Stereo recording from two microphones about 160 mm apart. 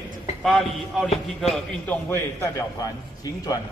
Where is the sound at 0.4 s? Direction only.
Centre (ahead or behind).